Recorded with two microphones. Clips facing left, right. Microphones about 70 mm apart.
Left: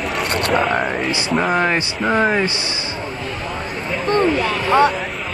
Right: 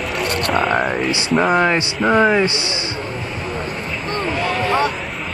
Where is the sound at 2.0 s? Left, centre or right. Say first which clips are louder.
Right 4 dB; centre.